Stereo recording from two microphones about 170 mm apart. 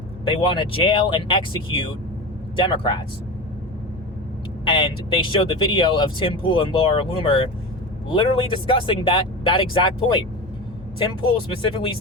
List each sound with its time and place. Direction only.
0.3 s speech: 30° left (ahead or behind)
2.6 s speech: 30° left (ahead or behind)
4.6 s speech: 30° left (ahead or behind)
11.6 s speech: 30° left (ahead or behind)